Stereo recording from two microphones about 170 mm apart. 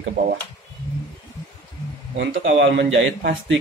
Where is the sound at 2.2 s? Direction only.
90° right.